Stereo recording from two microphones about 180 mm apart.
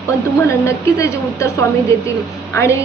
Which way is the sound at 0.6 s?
15° left (ahead or behind).